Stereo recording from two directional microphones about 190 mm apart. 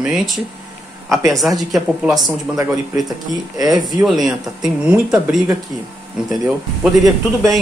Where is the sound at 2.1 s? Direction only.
20° right (ahead or behind).